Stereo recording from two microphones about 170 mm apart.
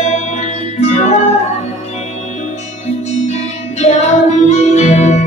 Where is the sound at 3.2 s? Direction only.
40° left (ahead or behind).